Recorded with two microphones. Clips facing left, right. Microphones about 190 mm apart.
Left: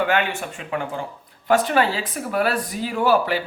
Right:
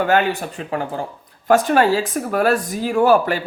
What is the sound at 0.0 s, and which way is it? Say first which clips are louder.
Speech: right 4 dB; 40° right (ahead or behind).